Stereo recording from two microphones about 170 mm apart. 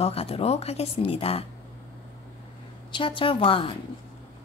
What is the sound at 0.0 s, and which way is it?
A woman's voice, 35° left (ahead or behind).